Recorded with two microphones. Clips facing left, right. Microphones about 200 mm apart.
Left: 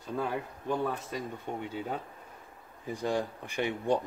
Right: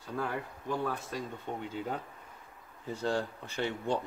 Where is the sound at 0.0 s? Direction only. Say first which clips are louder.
Left 2 dB; 20° left (ahead or behind).